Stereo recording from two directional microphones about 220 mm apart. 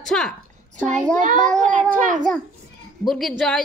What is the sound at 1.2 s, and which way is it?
A child's voice, 35° right (ahead or behind).